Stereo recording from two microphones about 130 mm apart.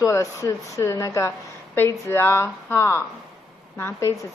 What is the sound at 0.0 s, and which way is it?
A woman's voice, 25° left (ahead or behind).